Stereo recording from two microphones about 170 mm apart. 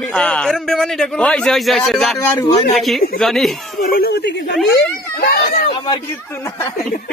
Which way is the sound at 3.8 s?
60° left (ahead or behind).